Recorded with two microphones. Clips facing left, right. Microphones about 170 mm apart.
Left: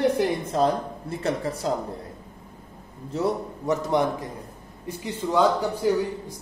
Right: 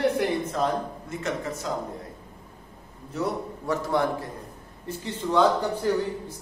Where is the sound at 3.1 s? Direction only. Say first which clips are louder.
Left 3 dB; 20° left (ahead or behind).